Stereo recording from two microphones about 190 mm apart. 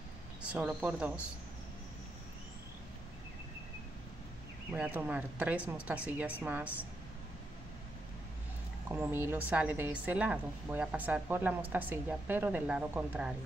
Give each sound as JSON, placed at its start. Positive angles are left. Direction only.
{"t": 0.4, "sound": "speech", "side_deg": -5}
{"t": 4.7, "sound": "a woman's voice", "side_deg": -10}
{"t": 8.8, "sound": "a woman's voice", "side_deg": -10}